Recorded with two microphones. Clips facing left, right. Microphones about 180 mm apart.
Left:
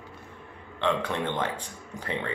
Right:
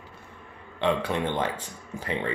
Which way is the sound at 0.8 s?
10° right (ahead or behind).